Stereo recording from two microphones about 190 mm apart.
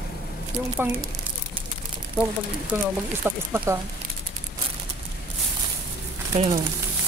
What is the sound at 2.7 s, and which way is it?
Speech, 10° right (ahead or behind).